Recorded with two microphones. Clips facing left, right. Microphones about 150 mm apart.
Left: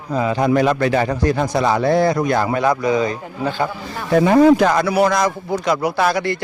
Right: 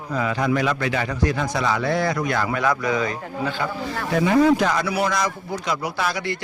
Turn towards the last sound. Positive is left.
turn(degrees=50)  # may be behind; listen again after turning